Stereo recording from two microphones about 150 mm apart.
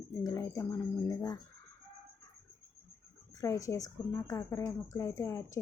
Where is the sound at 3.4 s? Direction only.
20° left (ahead or behind).